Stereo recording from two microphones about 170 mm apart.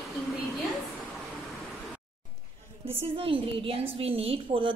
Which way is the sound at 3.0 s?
35° right (ahead or behind).